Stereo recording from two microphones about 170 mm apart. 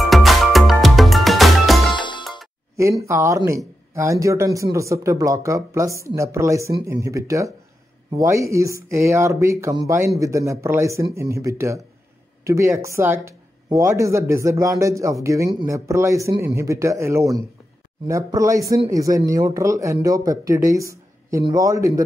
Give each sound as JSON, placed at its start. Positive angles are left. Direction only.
{"t": 0.1, "sound": "music", "side_deg": 0}
{"t": 2.0, "sound": "music", "side_deg": 25}
{"t": 2.8, "sound": "speech", "side_deg": -15}